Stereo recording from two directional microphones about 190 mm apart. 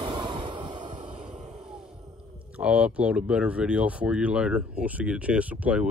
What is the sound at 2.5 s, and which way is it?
Speech, 5° right (ahead or behind).